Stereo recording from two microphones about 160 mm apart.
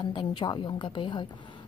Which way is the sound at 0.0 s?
30° left (ahead or behind).